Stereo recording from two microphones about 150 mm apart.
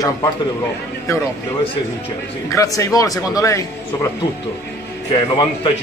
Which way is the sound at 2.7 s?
20° left (ahead or behind).